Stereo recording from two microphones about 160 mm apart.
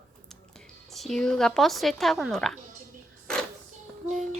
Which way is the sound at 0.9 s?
Centre (ahead or behind).